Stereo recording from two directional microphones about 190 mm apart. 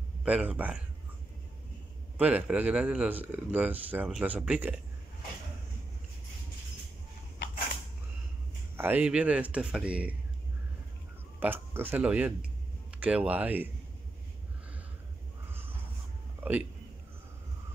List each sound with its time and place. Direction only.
0.2 s speech: 5° right (ahead or behind)
2.1 s speech: 5° right (ahead or behind)
8.7 s speech: 10° right (ahead or behind)
11.3 s speech: 10° right (ahead or behind)